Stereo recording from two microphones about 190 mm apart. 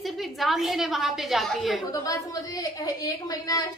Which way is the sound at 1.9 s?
20° left (ahead or behind).